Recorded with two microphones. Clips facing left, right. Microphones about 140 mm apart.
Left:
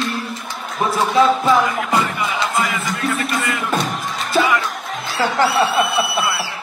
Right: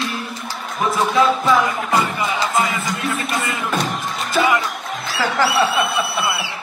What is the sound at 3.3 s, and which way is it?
Music, 25° right (ahead or behind).